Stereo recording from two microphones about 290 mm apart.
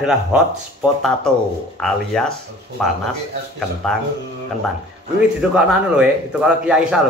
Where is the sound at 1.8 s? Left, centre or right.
Centre.